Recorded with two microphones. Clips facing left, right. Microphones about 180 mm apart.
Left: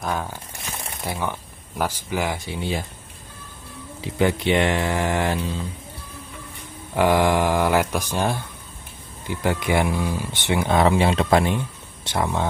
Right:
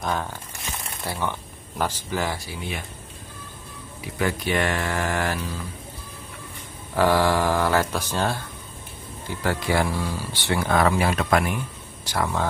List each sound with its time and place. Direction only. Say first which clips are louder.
0.0 s speech: even; 5° left (ahead or behind)
1.0 s speech: left 1 dB; 15° left (ahead or behind)
4.0 s speech: left 5 dB; 25° left (ahead or behind)
7.0 s speech: left 2 dB; 15° left (ahead or behind)